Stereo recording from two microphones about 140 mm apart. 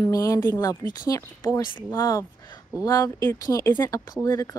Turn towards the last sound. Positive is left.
turn(degrees=20)  # may be behind; listen again after turning